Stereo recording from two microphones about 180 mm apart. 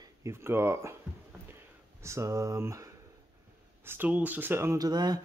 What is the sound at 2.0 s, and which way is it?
Speech, 15° right (ahead or behind).